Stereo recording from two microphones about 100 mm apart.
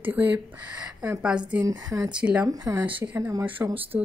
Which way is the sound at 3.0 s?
20° right (ahead or behind).